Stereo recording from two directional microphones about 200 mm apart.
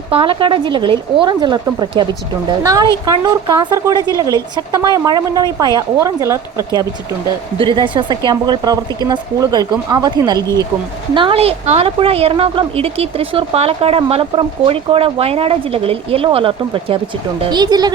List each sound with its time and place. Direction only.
0.1 s a woman's voice: 25° right (ahead or behind)